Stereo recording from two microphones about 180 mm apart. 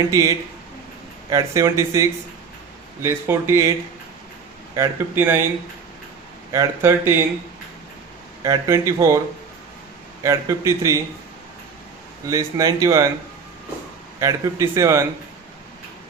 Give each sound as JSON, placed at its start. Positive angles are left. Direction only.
{"t": 0.1, "sound": "speech", "side_deg": -20}
{"t": 4.7, "sound": "speech", "side_deg": -15}
{"t": 6.5, "sound": "speech", "side_deg": -15}
{"t": 8.4, "sound": "speech", "side_deg": -20}
{"t": 10.2, "sound": "speech", "side_deg": -15}
{"t": 12.3, "sound": "speech", "side_deg": -20}
{"t": 14.2, "sound": "speech", "side_deg": -20}